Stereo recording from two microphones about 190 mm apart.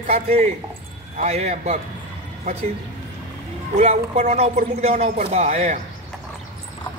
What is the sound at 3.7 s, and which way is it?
Speech, 35° right (ahead or behind).